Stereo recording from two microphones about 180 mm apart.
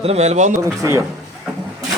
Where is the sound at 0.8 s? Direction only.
15° right (ahead or behind).